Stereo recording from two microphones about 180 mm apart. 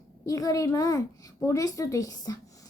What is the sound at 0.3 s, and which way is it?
A child's voice, 20° left (ahead or behind).